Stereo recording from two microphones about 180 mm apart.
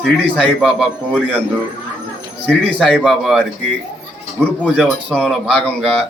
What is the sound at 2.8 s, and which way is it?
A man's voice, centre (ahead or behind).